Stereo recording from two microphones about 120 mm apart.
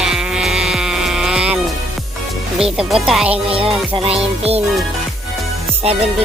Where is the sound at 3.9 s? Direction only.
55° right (ahead or behind).